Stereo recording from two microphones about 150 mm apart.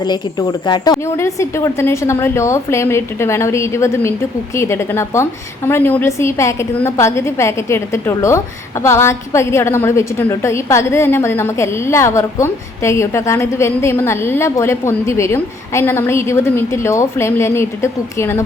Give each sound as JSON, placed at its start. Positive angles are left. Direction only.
{"t": 0.0, "sound": "a woman's voice", "side_deg": 30}